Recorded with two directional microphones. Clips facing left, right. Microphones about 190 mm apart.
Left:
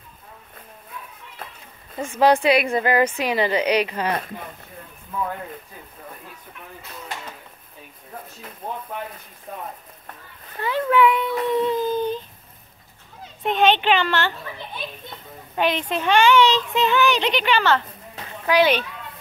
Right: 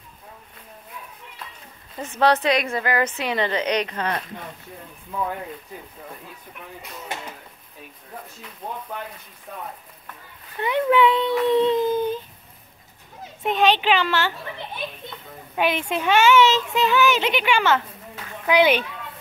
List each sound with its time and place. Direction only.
2.0 s a woman's voice: 10° left (ahead or behind)
10.6 s a child's voice: 20° right (ahead or behind)
13.4 s a child's voice: centre (ahead or behind)
15.5 s a child's voice: 10° right (ahead or behind)